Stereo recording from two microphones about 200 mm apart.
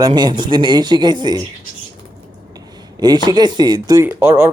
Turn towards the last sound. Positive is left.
turn(degrees=-10)  # may be behind; listen again after turning